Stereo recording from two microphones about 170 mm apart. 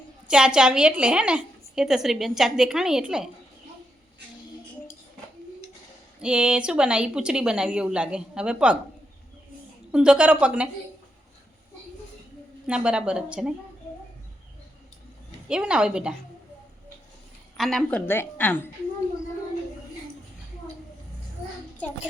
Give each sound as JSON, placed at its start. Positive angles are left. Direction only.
{"t": 0.3, "sound": "a woman's voice", "side_deg": -5}
{"t": 6.2, "sound": "a woman's voice", "side_deg": -5}
{"t": 9.9, "sound": "a woman's voice", "side_deg": -5}
{"t": 12.6, "sound": "a woman's voice", "side_deg": -5}
{"t": 15.4, "sound": "a woman's voice", "side_deg": -5}
{"t": 17.6, "sound": "a woman's voice", "side_deg": 5}